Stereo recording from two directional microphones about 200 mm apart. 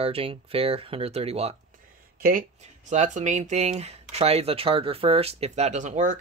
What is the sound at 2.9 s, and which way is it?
Speech, 35° right (ahead or behind).